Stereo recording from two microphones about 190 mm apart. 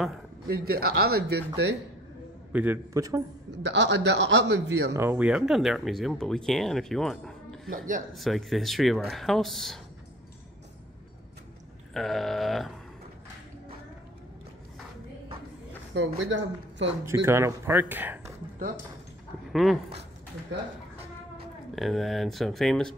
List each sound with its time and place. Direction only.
0.5 s speech: 55° right (ahead or behind)
2.5 s speech: 10° right (ahead or behind)
3.6 s a man's voice: 70° right (ahead or behind)
4.9 s speech: 10° right (ahead or behind)
7.7 s speech: 45° right (ahead or behind)
8.1 s speech: centre (ahead or behind)
11.9 s speech: centre (ahead or behind)
15.9 s a man's voice: 70° right (ahead or behind)
17.0 s speech: 15° right (ahead or behind)
19.5 s speech: centre (ahead or behind)
21.7 s speech: centre (ahead or behind)